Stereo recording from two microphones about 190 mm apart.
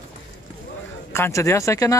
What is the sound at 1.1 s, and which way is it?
Speech, 15° left (ahead or behind).